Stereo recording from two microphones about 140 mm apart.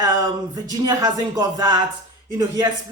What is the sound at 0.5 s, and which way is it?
A man's voice, 30° right (ahead or behind).